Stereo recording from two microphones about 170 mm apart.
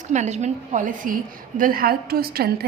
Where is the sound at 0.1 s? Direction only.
45° right (ahead or behind).